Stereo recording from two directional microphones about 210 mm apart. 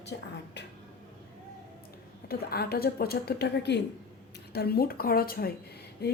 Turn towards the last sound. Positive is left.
turn(degrees=50)  # may be behind; listen again after turning